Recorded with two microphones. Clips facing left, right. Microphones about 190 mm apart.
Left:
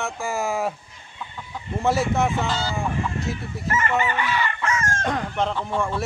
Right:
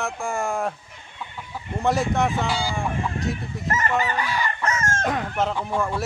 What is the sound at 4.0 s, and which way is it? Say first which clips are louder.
Chicken: left 1 dB; 35° right (ahead or behind).